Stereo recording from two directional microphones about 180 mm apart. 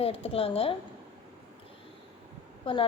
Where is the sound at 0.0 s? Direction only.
30° left (ahead or behind).